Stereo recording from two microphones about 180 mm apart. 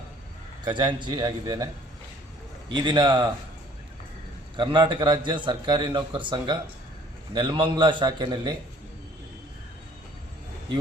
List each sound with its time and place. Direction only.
0.6 s a man's voice: 25° right (ahead or behind)
4.5 s a man's voice: 25° right (ahead or behind)